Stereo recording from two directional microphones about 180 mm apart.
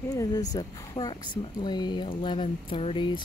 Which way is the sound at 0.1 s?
20° left (ahead or behind).